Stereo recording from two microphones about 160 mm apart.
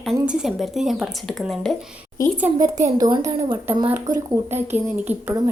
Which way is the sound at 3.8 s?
15° right (ahead or behind).